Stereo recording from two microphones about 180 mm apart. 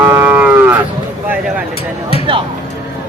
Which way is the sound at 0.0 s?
10° right (ahead or behind).